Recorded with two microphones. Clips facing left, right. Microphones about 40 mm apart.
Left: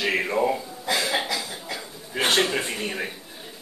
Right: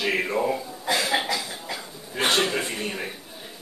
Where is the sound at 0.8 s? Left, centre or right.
Centre.